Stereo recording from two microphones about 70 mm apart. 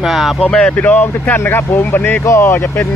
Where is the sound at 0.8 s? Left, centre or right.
Left.